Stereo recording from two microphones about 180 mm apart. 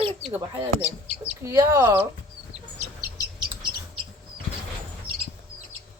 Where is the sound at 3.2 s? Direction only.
20° right (ahead or behind).